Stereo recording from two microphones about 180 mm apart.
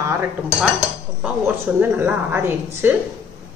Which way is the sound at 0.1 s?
5° right (ahead or behind).